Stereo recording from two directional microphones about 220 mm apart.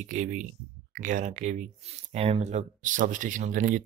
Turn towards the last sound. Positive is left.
turn(degrees=-35)  # may be behind; listen again after turning